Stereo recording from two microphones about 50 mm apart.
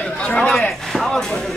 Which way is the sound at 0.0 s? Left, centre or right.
Centre.